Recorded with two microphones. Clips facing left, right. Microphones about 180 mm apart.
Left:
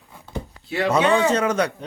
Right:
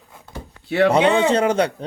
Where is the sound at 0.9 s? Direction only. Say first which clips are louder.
Left 1 dB; 30° right (ahead or behind).